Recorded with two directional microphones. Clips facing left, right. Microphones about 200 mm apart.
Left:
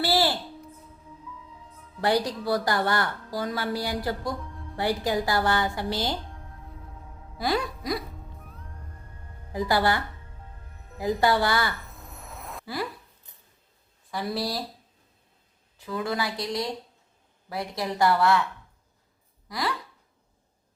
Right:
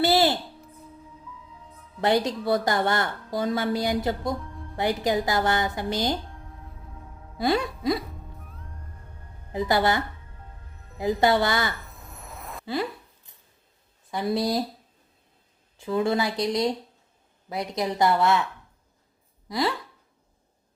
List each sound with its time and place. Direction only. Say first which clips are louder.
0.0 s music: right 4 dB; 20° right (ahead or behind)
2.0 s a woman's voice: right 2 dB; 20° right (ahead or behind)
4.3 s music: right 3 dB; centre (ahead or behind)
5.0 s a woman's voice: right 2 dB; 20° right (ahead or behind)
7.3 s speech: right 3 dB; 25° right (ahead or behind)
8.5 s music: right 1 dB; centre (ahead or behind)
9.5 s a woman's voice: right 1 dB; 20° right (ahead or behind)
12.1 s a sound: right 1 dB; centre (ahead or behind)
12.6 s speech: right 4 dB; 25° right (ahead or behind)
14.1 s a woman's voice: right 5 dB; 20° right (ahead or behind)
15.8 s a woman's voice: right 5 dB; 25° right (ahead or behind)
19.5 s speech: right 5 dB; 25° right (ahead or behind)